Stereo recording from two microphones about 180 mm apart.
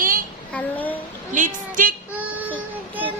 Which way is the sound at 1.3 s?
45° right (ahead or behind).